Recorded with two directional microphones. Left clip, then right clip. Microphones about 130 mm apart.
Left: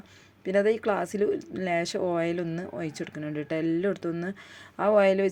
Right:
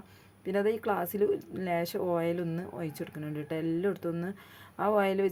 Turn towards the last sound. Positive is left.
turn(degrees=20)  # may be behind; listen again after turning